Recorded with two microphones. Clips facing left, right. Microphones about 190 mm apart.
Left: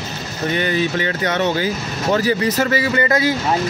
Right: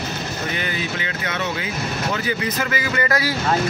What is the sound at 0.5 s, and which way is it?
Speech, 35° left (ahead or behind).